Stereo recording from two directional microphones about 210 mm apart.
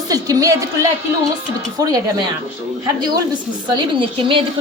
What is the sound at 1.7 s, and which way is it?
A woman's voice, 15° right (ahead or behind).